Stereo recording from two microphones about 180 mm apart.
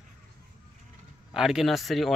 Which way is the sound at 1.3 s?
5° right (ahead or behind).